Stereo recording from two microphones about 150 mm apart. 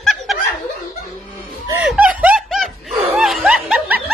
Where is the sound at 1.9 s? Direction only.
5° right (ahead or behind).